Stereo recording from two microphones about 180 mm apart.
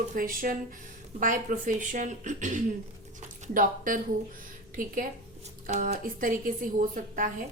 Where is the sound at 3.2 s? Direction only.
50° right (ahead or behind).